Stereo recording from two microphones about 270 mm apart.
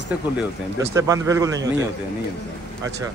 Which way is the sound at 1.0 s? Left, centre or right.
Centre.